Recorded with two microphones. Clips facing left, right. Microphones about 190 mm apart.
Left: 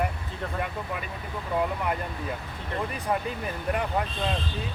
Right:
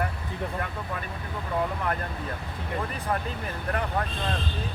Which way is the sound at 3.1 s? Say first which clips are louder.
Left 2 dB; 15° left (ahead or behind).